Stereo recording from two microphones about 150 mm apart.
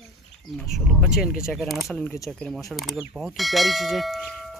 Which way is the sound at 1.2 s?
5° right (ahead or behind).